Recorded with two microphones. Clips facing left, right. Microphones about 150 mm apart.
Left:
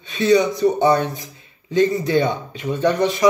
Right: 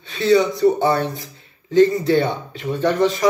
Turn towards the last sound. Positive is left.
turn(degrees=20)  # may be behind; listen again after turning